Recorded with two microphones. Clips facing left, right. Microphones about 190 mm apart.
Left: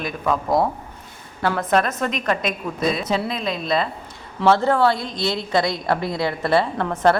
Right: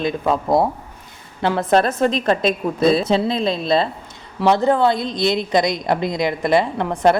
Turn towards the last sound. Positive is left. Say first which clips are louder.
# right 2 dB
turn(degrees=-15)  # may be behind; listen again after turning